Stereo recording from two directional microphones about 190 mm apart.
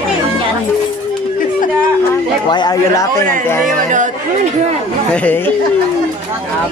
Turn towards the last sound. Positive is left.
turn(degrees=10)  # may be behind; listen again after turning